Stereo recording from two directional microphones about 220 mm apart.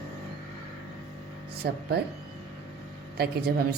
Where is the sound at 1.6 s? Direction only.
45° right (ahead or behind).